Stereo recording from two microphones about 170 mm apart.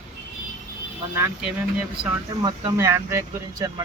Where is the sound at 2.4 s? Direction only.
20° right (ahead or behind).